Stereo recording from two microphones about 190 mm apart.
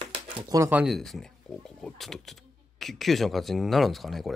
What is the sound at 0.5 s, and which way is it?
Speech, 10° right (ahead or behind).